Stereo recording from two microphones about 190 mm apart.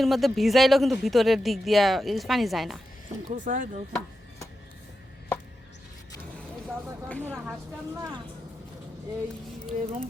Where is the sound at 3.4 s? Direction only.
45° right (ahead or behind).